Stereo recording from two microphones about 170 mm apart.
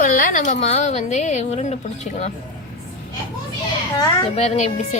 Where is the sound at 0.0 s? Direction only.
55° left (ahead or behind).